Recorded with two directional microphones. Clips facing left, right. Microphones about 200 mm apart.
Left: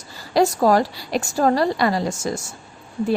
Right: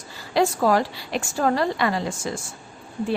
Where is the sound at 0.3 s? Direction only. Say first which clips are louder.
Left 3 dB; 40° left (ahead or behind).